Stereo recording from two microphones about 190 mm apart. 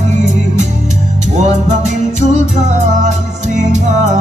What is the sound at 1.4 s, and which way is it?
Music, 40° right (ahead or behind).